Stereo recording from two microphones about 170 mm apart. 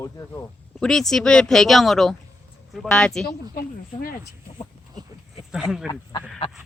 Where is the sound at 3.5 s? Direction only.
60° left (ahead or behind).